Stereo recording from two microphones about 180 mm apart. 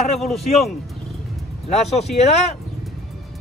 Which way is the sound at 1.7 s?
35° left (ahead or behind).